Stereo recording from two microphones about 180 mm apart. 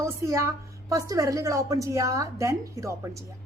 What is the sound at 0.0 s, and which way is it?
Speech, 15° right (ahead or behind).